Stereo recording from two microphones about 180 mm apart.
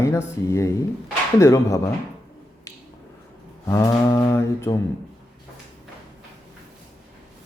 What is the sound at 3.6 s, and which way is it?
Mantra, 20° left (ahead or behind).